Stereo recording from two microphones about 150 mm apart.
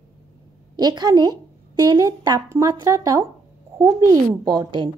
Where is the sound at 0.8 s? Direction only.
25° right (ahead or behind).